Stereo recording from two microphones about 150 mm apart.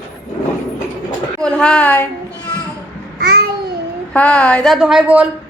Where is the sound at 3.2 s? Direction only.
80° right.